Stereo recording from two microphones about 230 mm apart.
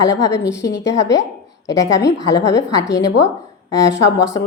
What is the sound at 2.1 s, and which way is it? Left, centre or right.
Speech, left.